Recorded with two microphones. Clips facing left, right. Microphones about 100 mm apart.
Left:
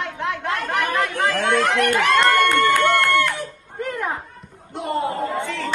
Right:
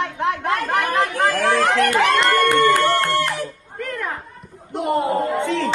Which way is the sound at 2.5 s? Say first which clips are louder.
Right 1 dB; 20° right (ahead or behind).